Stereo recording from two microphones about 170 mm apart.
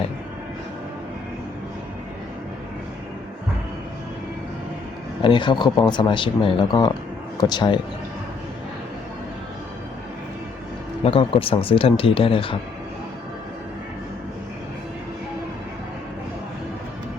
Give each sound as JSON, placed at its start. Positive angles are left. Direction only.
{"t": 5.2, "sound": "a man's voice", "side_deg": 25}
{"t": 11.0, "sound": "speech", "side_deg": 35}